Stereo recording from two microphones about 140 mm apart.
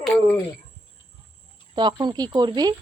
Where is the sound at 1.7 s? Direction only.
30° right (ahead or behind).